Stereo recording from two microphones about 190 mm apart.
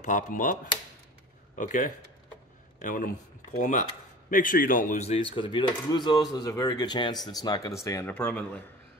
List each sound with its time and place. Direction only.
0.0 s speech: 45° left (ahead or behind)
1.6 s speech: 45° left (ahead or behind); by 8.6 s 10° left (ahead or behind)